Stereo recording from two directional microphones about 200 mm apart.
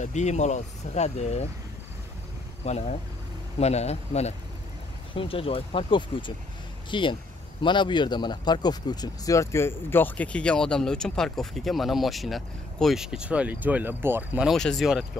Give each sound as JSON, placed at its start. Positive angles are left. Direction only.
{"t": 0.0, "sound": "speech", "side_deg": 35}
{"t": 2.6, "sound": "speech", "side_deg": 35}